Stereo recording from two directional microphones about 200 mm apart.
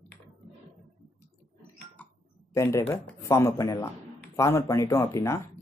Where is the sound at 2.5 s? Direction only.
15° left (ahead or behind).